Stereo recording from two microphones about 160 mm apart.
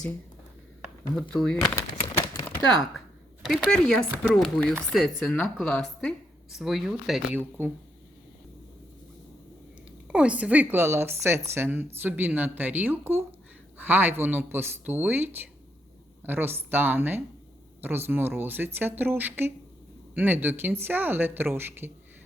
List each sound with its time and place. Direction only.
1.1 s a woman's voice: 5° left (ahead or behind)
1.7 s a sound: 15° left (ahead or behind)
3.4 s a woman's voice: centre (ahead or behind)
10.1 s a woman's voice: 5° right (ahead or behind)